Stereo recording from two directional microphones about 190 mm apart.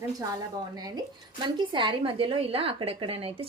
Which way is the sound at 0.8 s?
20° right (ahead or behind).